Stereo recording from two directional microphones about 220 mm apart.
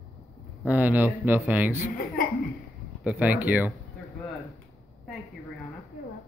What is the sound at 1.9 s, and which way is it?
Speech, 40° left (ahead or behind).